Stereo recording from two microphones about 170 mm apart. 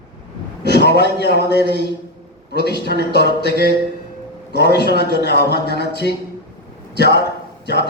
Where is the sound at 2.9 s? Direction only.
70° right (ahead or behind).